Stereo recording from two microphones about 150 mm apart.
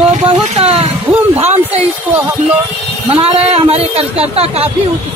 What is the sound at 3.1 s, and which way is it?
Speech, 40° right (ahead or behind).